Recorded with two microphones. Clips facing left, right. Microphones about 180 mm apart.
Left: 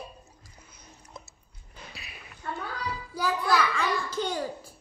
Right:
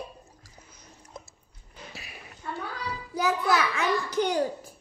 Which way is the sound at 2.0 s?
40° right (ahead or behind).